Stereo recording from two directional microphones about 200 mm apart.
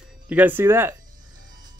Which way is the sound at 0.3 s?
10° right (ahead or behind).